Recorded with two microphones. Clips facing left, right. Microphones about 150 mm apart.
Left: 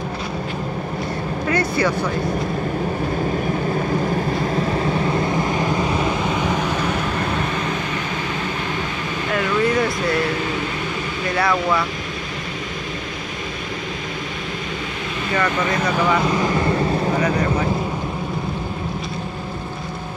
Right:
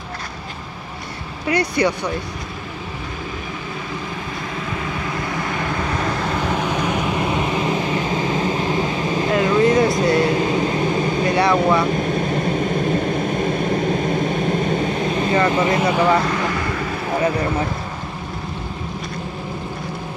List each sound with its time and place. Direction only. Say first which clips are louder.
1.5 s speech: right 2 dB; 15° right (ahead or behind)
4.8 s vehicle: left 6 dB; 35° left (ahead or behind); by 9.8 s 25° right (ahead or behind)
10.0 s a sound: right 4 dB; 30° right (ahead or behind)
11.5 s speech: right 4 dB; 40° right (ahead or behind)
12.4 s vehicle: right 10 dB; 45° right (ahead or behind); by 15.8 s 25° right (ahead or behind)
15.8 s speech: right 1 dB; 5° right (ahead or behind)
16.2 s vehicle: left 2 dB; 20° left (ahead or behind)